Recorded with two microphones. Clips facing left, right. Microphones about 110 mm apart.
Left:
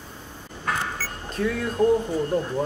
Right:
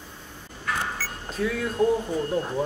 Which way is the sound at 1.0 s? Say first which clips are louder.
Left 1 dB; 45° left (ahead or behind).